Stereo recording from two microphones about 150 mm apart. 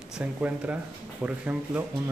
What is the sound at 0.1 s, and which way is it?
Speech, 10° right (ahead or behind).